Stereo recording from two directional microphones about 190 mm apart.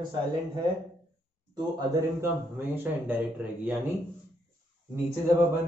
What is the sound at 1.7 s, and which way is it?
Speech, 15° right (ahead or behind).